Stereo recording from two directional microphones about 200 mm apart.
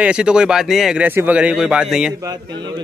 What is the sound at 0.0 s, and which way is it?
Speech, 5° right (ahead or behind).